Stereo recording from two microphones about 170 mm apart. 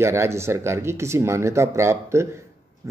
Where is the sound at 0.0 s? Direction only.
15° right (ahead or behind).